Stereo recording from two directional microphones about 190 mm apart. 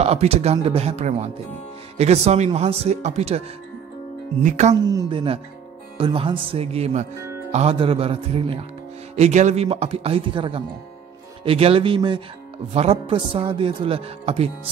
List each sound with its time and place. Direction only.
0.0 s speech: 35° right (ahead or behind)
4.8 s speech: 25° right (ahead or behind)